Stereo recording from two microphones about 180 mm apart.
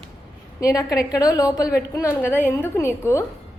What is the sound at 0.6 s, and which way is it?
A woman's voice, 20° left (ahead or behind).